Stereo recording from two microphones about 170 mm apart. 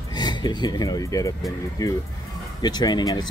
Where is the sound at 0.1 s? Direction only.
25° left (ahead or behind).